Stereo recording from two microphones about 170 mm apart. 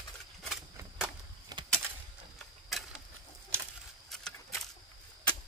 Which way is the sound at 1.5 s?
25° right (ahead or behind).